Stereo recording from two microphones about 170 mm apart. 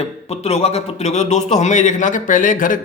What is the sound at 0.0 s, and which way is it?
A man's voice, 40° left (ahead or behind).